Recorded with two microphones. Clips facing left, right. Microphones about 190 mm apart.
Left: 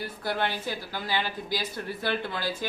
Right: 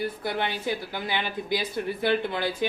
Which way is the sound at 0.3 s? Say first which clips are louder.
Right 1 dB; 15° right (ahead or behind).